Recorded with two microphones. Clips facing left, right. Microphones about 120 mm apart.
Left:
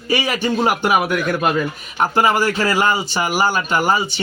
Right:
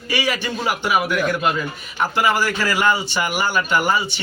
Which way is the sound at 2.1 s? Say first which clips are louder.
Left 3 dB; 35° left (ahead or behind).